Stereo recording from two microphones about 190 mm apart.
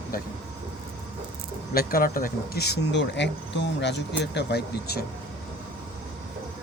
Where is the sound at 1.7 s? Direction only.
50° left (ahead or behind).